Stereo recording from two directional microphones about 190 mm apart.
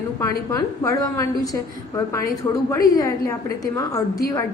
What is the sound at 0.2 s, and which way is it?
A woman's voice, 15° left (ahead or behind).